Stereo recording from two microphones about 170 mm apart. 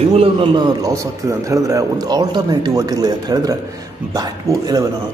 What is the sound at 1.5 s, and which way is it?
Speech, 20° right (ahead or behind).